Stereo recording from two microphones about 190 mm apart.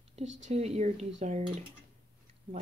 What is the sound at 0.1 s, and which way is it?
Speech, 35° right (ahead or behind).